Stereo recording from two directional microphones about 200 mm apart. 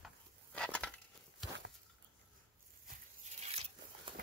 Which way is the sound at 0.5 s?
5° left (ahead or behind).